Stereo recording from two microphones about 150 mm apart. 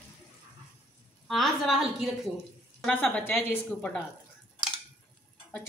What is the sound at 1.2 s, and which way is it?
A woman's voice, centre (ahead or behind).